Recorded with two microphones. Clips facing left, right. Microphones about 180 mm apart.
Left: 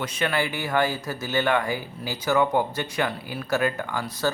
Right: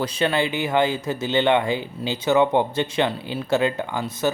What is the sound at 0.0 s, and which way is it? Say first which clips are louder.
Speech: right 4 dB; 30° right (ahead or behind).